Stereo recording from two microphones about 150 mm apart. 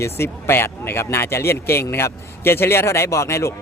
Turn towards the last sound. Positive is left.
turn(degrees=20)  # may be behind; listen again after turning